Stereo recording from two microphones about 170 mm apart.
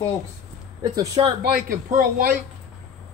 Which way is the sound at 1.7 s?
55° right (ahead or behind).